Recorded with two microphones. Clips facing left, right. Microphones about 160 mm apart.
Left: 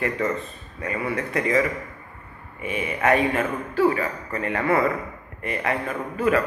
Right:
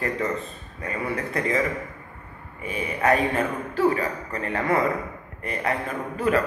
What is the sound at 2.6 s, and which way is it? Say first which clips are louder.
A man's voice: left 1 dB; 35° right (ahead or behind).